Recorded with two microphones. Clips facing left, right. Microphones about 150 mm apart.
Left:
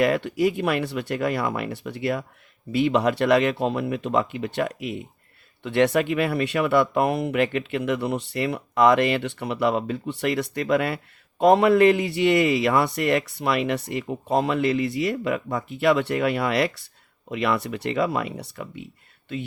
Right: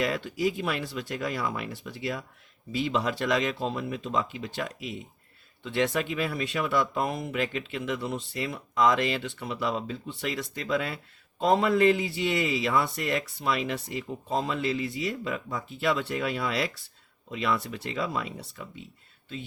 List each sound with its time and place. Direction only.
0.0 s speech: 60° left (ahead or behind)